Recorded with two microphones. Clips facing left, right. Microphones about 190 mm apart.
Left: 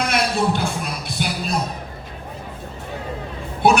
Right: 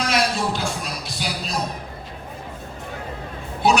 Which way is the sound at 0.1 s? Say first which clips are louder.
Left 2 dB; 55° left (ahead or behind).